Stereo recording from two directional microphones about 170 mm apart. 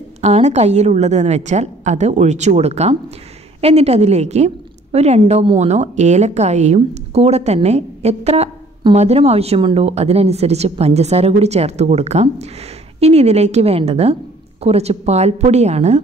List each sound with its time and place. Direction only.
0.2 s a woman's voice: 40° right (ahead or behind)